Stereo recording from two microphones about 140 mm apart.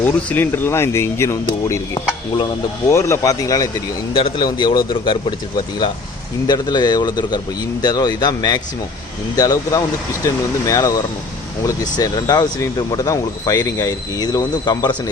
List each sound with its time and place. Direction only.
0.0 s speech: 15° left (ahead or behind)
2.9 s speech: 20° left (ahead or behind)
4.1 s a man's voice: 35° left (ahead or behind)
6.5 s speech: 30° left (ahead or behind)